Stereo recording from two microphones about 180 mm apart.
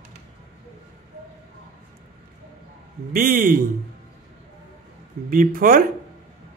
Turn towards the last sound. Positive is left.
turn(degrees=-55)  # may be behind; listen again after turning